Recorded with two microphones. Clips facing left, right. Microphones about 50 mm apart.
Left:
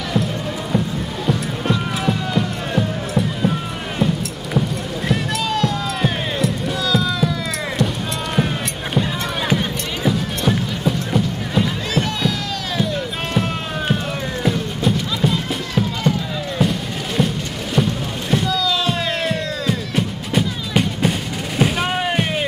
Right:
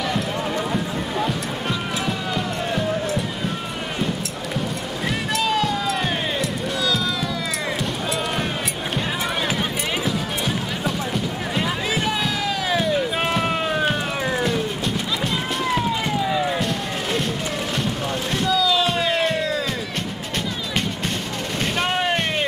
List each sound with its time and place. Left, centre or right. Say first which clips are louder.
1.2 s music: left 3 dB; centre
5.0 s music: left 1 dB; centre
9.5 s music: left 2 dB; centre
11.6 s music: left 1 dB; centre
15.3 s run: even; centre
18.3 s music: left 1 dB; centre